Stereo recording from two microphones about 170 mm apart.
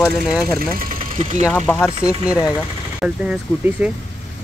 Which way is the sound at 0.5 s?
55° right (ahead or behind).